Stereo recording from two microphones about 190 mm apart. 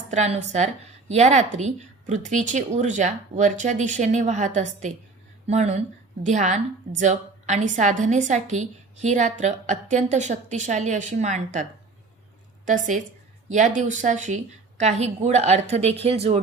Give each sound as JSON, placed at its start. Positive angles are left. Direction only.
{"t": 0.1, "sound": "a woman's voice", "side_deg": -35}
{"t": 12.6, "sound": "a woman's voice", "side_deg": -40}